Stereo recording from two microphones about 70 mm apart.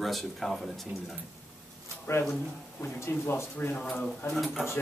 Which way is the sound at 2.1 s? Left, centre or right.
Left.